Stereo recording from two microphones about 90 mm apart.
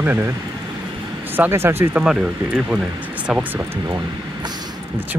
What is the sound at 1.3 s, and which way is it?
Speech, 25° right (ahead or behind).